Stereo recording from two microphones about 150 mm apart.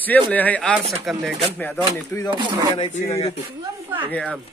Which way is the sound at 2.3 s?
30° right (ahead or behind).